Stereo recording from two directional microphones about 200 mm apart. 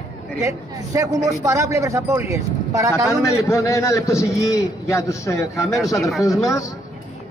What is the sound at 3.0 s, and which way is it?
A man's voice, 15° left (ahead or behind).